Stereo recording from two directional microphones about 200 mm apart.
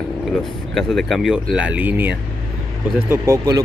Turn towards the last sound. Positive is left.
turn(degrees=-15)  # may be behind; listen again after turning